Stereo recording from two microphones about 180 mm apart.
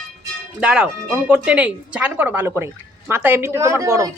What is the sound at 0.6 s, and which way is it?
Speech, 5° right (ahead or behind).